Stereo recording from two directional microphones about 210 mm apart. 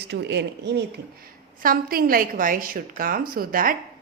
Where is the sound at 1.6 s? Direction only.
45° right (ahead or behind).